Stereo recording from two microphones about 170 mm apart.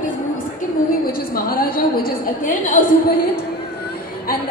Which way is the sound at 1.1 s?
60° left (ahead or behind).